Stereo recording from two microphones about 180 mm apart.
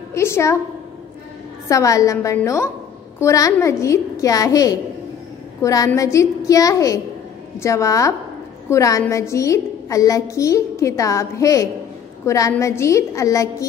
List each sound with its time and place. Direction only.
0.1 s a woman's voice: 15° left (ahead or behind)
1.7 s a woman's voice: 15° left (ahead or behind)